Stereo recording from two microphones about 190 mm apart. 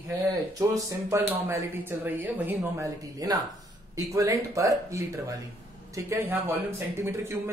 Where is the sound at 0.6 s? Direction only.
15° right (ahead or behind).